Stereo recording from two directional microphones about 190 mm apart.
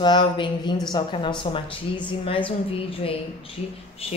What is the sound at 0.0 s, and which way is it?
Speech, 25° left (ahead or behind).